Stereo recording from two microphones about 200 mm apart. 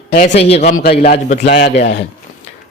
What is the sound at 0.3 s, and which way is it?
Speech, 30° left (ahead or behind).